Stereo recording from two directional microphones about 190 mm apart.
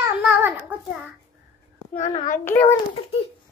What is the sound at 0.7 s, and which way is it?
Speech, 10° right (ahead or behind).